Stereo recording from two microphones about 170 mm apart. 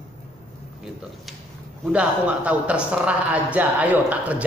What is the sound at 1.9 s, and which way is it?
A man's voice, 5° right (ahead or behind).